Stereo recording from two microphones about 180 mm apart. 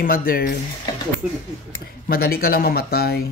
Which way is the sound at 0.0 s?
55° left (ahead or behind).